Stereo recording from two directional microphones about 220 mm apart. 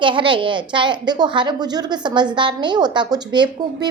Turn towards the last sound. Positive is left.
turn(degrees=-20)  # may be behind; listen again after turning